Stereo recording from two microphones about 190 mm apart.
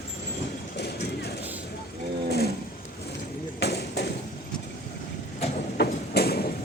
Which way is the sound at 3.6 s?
60° left (ahead or behind).